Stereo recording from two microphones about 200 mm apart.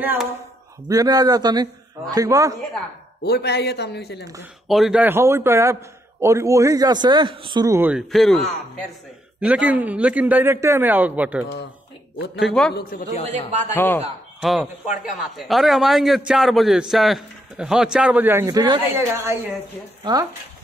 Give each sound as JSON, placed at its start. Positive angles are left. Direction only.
{"t": 0.0, "sound": "a man's voice", "side_deg": -10}
{"t": 3.2, "sound": "speech", "side_deg": 55}
{"t": 4.6, "sound": "a man's voice", "side_deg": 0}
{"t": 13.7, "sound": "speech", "side_deg": 10}
{"t": 14.4, "sound": "a man's voice", "side_deg": 0}